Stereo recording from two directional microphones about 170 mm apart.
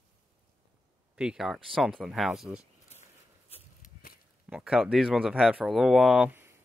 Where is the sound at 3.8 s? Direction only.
60° left (ahead or behind).